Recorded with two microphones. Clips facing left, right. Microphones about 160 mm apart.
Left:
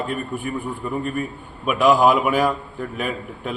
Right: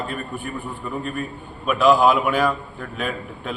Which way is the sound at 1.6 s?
10° left (ahead or behind).